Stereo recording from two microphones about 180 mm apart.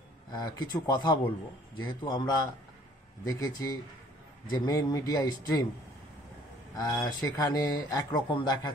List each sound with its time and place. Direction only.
0.3 s speech: 20° left (ahead or behind)
6.8 s speech: 20° left (ahead or behind)